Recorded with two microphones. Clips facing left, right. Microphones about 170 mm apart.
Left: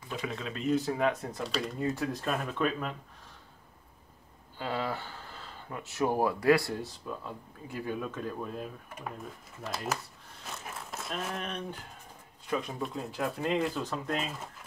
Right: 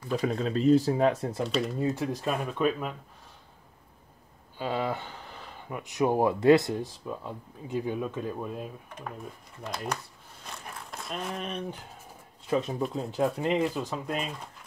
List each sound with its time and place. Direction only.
0.1 s speech: 40° right (ahead or behind)
1.4 s speech: centre (ahead or behind)
4.6 s speech: 15° right (ahead or behind)
8.9 s speech: centre (ahead or behind)
10.4 s a sound: 5° left (ahead or behind)
12.4 s speech: 25° right (ahead or behind)
13.6 s speech: centre (ahead or behind)